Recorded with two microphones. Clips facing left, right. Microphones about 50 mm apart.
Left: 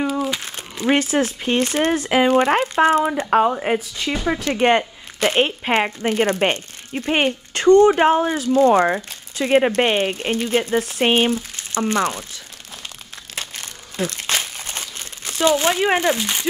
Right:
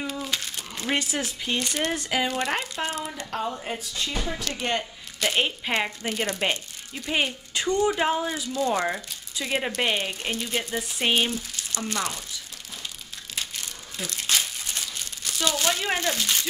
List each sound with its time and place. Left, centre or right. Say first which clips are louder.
0.4 s crumpling: left 3 dB; left
0.8 s speech: left 10 dB; left
3.3 s speech: left 12 dB; left
13.3 s crumpling: left 3 dB; left
16.2 s speech: left 3 dB; left